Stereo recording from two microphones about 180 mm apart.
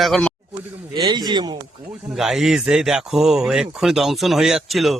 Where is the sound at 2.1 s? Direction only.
Centre (ahead or behind).